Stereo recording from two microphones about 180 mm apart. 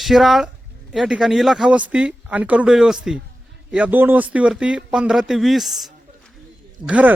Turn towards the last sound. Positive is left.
turn(degrees=-5)  # may be behind; listen again after turning